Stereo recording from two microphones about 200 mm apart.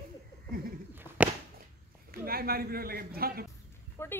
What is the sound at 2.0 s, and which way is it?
A man's voice, 50° right (ahead or behind).